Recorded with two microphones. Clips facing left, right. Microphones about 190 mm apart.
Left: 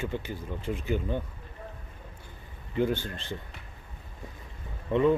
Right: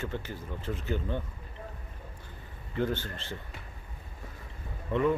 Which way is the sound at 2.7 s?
15° left (ahead or behind).